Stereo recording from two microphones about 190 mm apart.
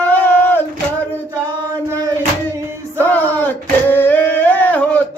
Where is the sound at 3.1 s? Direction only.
10° left (ahead or behind).